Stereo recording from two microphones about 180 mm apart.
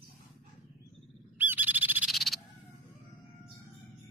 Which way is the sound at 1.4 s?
10° right (ahead or behind).